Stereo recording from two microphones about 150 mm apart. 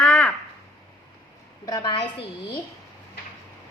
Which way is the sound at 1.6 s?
25° left (ahead or behind).